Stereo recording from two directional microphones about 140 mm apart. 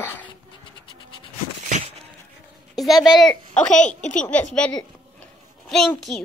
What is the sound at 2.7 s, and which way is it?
A woman's voice, centre (ahead or behind).